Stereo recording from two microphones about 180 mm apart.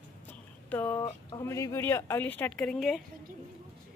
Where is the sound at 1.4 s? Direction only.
15° left (ahead or behind).